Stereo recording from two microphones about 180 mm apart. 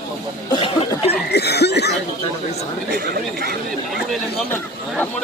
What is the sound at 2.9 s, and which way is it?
Speech, 65° right (ahead or behind).